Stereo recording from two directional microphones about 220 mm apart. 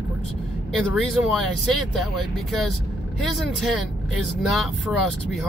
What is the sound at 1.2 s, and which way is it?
Speech, centre (ahead or behind).